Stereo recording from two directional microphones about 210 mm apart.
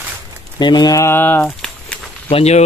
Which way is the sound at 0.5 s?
20° left (ahead or behind).